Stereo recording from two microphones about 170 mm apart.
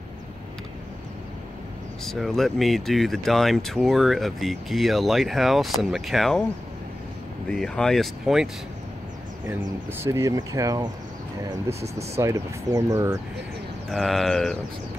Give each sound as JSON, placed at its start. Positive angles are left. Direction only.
{"t": 2.0, "sound": "speech", "side_deg": 0}
{"t": 7.5, "sound": "speech", "side_deg": 5}
{"t": 10.0, "sound": "speech", "side_deg": -15}
{"t": 12.2, "sound": "speech", "side_deg": -15}
{"t": 13.8, "sound": "speech", "side_deg": 0}